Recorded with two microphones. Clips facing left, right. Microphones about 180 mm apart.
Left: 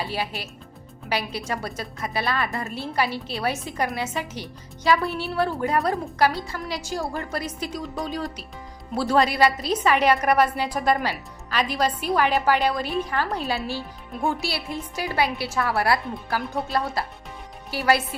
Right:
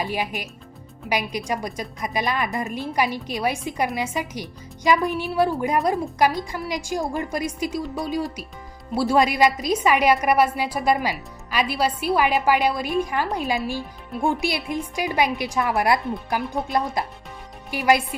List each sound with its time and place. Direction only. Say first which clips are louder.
0.0 s a woman's voice: right 2 dB; 15° right (ahead or behind)